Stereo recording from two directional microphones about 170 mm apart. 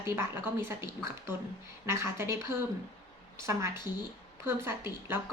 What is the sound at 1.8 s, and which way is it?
A woman's voice, 15° right (ahead or behind).